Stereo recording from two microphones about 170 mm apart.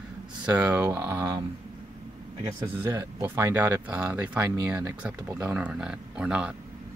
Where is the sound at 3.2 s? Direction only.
15° right (ahead or behind).